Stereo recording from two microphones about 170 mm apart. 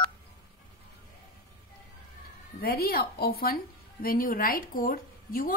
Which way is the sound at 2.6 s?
65° left (ahead or behind).